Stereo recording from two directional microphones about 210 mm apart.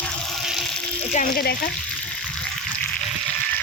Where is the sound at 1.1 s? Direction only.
50° left (ahead or behind).